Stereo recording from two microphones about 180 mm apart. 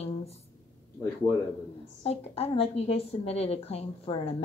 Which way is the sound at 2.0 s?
35° left (ahead or behind).